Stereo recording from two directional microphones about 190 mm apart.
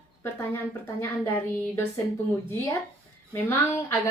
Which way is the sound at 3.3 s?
15° left (ahead or behind).